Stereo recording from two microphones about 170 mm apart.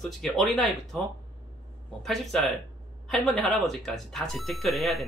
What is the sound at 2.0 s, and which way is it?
Speech, centre (ahead or behind).